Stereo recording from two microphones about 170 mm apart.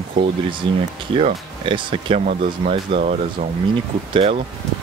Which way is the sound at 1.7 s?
30° right (ahead or behind).